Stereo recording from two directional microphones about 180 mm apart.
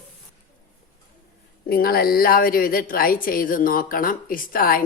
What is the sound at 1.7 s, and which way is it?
A woman's voice, 55° left (ahead or behind).